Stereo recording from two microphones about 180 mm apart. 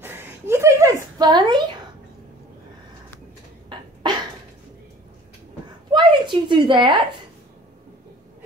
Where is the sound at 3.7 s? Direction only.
25° right (ahead or behind).